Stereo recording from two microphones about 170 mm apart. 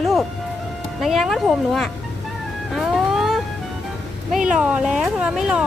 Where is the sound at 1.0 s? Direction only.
Centre (ahead or behind).